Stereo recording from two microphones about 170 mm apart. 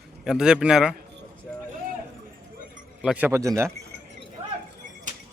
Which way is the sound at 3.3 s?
15° right (ahead or behind).